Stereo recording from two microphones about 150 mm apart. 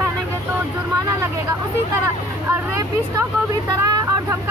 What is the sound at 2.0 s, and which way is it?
Speech, 20° right (ahead or behind).